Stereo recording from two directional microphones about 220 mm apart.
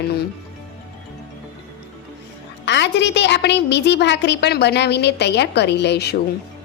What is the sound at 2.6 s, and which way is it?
A woman's voice, 55° left (ahead or behind).